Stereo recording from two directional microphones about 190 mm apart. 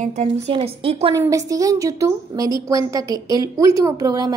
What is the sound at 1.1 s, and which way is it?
A woman's voice, 20° right (ahead or behind).